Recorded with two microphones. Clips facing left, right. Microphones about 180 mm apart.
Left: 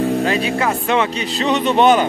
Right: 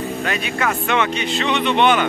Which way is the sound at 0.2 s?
30° left (ahead or behind).